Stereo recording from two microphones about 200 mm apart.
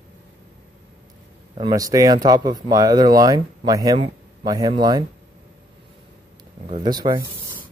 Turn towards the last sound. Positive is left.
turn(degrees=-20)  # may be behind; listen again after turning